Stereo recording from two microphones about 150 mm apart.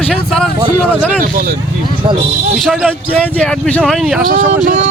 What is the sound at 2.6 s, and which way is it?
Speech, 5° right (ahead or behind).